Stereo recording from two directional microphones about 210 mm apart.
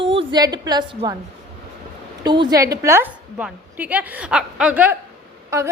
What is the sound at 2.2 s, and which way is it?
A woman's voice, 20° right (ahead or behind).